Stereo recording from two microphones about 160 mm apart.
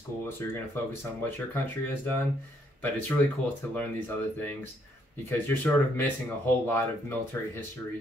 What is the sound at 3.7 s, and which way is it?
Speech, 10° left (ahead or behind).